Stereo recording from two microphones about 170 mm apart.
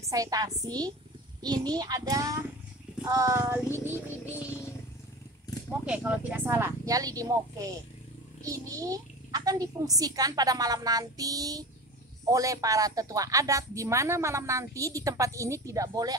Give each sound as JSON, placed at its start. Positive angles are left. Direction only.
{"t": 0.0, "sound": "a woman's voice", "side_deg": -20}
{"t": 5.9, "sound": "speech", "side_deg": -10}